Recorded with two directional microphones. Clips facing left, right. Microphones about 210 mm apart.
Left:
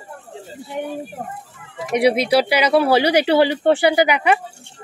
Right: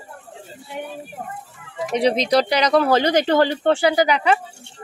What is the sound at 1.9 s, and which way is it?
Speech, 10° left (ahead or behind).